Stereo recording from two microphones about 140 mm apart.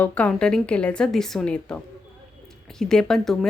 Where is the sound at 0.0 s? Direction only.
10° left (ahead or behind).